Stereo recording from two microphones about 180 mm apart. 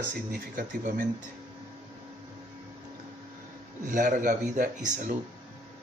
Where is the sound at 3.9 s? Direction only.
45° right (ahead or behind).